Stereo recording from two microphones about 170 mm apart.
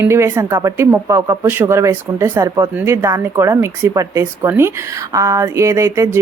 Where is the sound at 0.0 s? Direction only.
15° right (ahead or behind).